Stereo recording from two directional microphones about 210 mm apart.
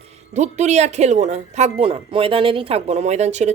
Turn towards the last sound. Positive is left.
turn(degrees=-35)  # may be behind; listen again after turning